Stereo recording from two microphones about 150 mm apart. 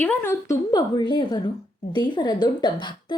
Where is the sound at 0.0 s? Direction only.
10° left (ahead or behind).